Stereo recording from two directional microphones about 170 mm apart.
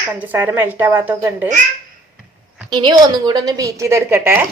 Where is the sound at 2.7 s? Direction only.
25° right (ahead or behind).